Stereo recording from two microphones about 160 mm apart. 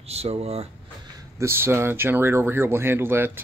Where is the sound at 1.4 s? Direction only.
15° right (ahead or behind).